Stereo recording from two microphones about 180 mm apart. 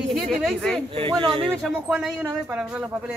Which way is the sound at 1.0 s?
30° right (ahead or behind).